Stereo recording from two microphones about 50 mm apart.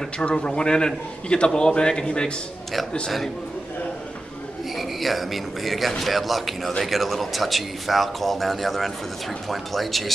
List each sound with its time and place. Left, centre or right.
0.2 s a man's voice: centre
4.7 s speech: centre